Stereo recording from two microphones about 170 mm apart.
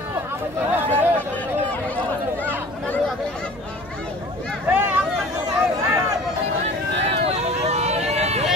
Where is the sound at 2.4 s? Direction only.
10° left (ahead or behind).